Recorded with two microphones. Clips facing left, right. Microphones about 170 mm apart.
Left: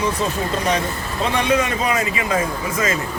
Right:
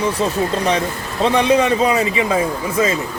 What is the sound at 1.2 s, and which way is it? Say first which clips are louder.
Speech: right 5 dB; 30° right (ahead or behind).